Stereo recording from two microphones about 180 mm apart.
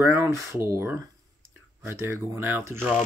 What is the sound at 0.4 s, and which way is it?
Speech, 15° right (ahead or behind).